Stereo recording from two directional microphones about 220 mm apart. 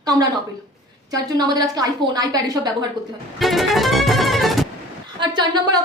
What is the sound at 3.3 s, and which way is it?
Music, centre (ahead or behind).